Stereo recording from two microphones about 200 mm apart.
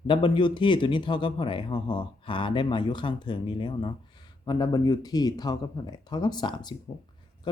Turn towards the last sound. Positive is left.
turn(degrees=20)  # may be behind; listen again after turning